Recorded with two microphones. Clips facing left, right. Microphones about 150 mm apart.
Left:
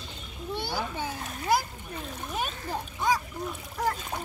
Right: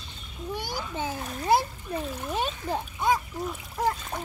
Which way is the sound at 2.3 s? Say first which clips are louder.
Right 3 dB; 25° right (ahead or behind).